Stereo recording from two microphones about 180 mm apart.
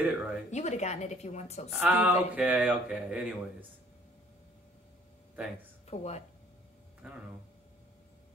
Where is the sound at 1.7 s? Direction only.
5° right (ahead or behind).